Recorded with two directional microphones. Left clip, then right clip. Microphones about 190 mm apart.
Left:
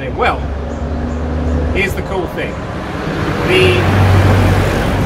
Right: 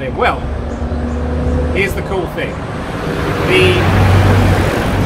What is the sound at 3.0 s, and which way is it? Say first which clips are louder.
Vehicle: even; 55° right (ahead or behind).